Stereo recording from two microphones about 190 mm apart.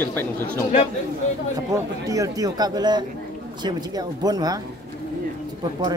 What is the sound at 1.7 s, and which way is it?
Speech, 15° right (ahead or behind).